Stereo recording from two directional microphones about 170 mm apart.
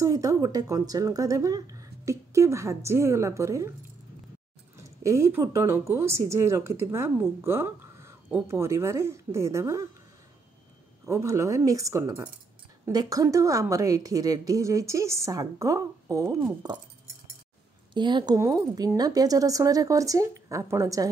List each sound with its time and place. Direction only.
0.0 s a woman's voice: 20° right (ahead or behind)
5.0 s a woman's voice: 15° right (ahead or behind)
11.1 s a woman's voice: 15° right (ahead or behind)
17.9 s a woman's voice: 25° right (ahead or behind)